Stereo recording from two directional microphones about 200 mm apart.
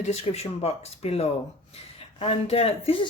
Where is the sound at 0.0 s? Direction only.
30° left (ahead or behind).